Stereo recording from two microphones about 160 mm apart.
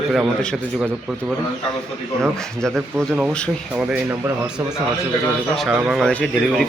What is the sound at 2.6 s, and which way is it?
Speech, 5° left (ahead or behind).